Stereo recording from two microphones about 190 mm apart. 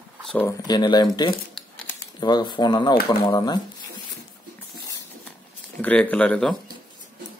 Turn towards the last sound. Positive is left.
turn(degrees=5)  # may be behind; listen again after turning